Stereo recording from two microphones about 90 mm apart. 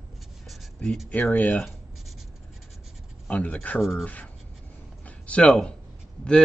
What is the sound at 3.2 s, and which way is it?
Speech, 15° left (ahead or behind).